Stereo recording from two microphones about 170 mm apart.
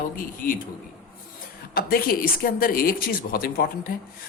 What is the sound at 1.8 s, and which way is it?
Speech, 60° left (ahead or behind).